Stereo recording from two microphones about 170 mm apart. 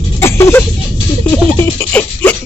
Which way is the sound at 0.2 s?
15° left (ahead or behind).